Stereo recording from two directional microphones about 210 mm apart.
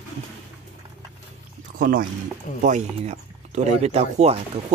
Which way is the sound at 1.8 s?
45° right (ahead or behind).